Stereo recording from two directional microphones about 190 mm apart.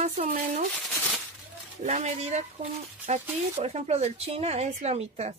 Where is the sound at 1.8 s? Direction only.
35° right (ahead or behind).